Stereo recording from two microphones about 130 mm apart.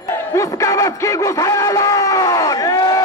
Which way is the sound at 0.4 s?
25° left (ahead or behind).